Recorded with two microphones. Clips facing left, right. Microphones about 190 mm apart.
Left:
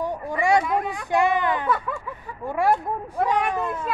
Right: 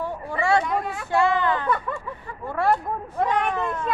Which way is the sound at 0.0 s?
15° left (ahead or behind).